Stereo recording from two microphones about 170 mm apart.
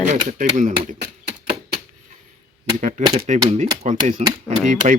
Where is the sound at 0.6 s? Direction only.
45° right (ahead or behind).